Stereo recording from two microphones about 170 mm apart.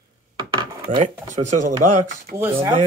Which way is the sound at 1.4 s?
45° right (ahead or behind).